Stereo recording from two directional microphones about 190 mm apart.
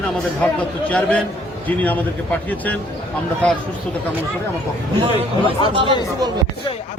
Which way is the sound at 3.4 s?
5° left (ahead or behind).